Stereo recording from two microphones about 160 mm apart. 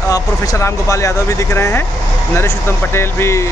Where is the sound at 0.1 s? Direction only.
20° left (ahead or behind).